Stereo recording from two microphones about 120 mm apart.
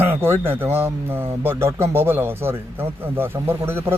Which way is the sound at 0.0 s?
20° right (ahead or behind).